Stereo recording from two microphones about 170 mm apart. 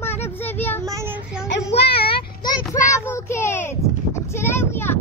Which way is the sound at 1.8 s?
70° left (ahead or behind).